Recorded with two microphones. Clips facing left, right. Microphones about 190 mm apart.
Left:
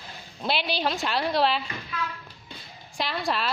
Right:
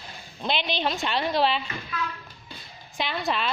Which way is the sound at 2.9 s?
Centre (ahead or behind).